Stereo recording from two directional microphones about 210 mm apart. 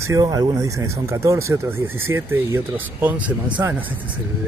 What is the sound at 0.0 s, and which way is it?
Speech, 15° right (ahead or behind).